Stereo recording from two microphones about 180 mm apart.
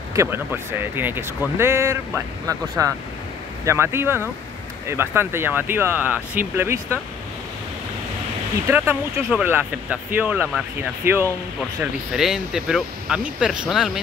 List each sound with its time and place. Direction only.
0.1 s speech: 15° right (ahead or behind)
8.6 s speech: 10° right (ahead or behind)
11.8 s speech: centre (ahead or behind)